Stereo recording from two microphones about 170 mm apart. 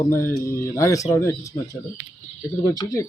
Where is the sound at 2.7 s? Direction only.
20° left (ahead or behind).